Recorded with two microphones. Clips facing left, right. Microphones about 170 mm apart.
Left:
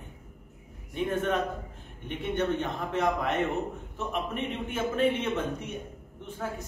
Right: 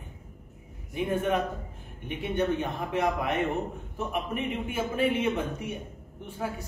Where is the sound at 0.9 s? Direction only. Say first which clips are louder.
Right 1 dB; 10° right (ahead or behind).